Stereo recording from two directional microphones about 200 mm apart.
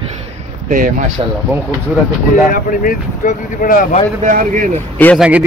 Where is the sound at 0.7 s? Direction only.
45° right (ahead or behind).